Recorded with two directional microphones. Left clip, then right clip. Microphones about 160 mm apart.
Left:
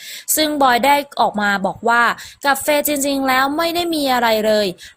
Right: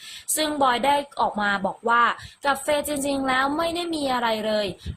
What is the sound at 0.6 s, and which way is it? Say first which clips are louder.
Speech: left 7 dB; 35° left (ahead or behind).